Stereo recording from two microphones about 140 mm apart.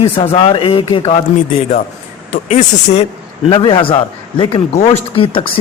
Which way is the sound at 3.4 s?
35° left (ahead or behind).